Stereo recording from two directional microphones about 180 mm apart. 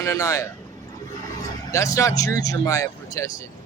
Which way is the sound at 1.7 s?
15° left (ahead or behind).